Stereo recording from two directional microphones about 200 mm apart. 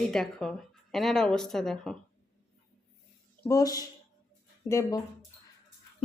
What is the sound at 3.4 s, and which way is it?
Speech, 15° left (ahead or behind).